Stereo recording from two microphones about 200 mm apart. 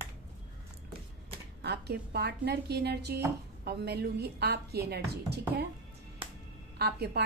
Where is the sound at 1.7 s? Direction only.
55° right (ahead or behind).